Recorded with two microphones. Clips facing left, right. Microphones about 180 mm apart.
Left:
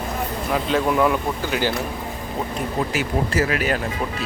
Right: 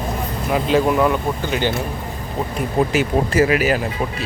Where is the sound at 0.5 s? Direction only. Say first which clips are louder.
Right 4 dB; 5° right (ahead or behind).